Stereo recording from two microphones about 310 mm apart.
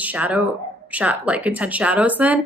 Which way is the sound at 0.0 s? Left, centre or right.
Centre.